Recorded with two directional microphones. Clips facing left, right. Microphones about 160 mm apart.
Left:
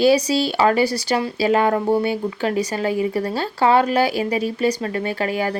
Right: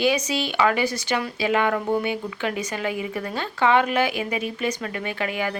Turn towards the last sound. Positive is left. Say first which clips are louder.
# left 5 dB
turn(degrees=35)  # may be behind; listen again after turning